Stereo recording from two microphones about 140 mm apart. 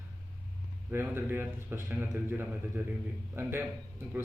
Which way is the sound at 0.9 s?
15° right (ahead or behind).